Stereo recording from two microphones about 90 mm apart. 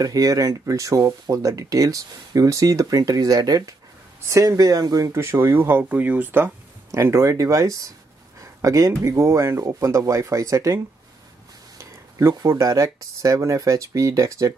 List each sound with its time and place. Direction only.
0.0 s speech: 40° right (ahead or behind)
11.8 s speech: 30° right (ahead or behind)